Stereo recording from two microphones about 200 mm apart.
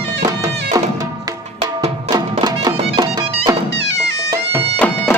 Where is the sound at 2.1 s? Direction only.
20° right (ahead or behind).